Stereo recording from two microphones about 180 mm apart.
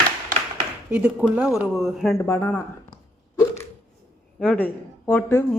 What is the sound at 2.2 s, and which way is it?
Speech, 15° left (ahead or behind).